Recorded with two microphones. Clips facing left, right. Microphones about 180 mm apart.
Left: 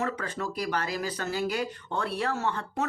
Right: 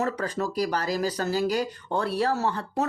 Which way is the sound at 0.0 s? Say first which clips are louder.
Right 4 dB; 35° right (ahead or behind).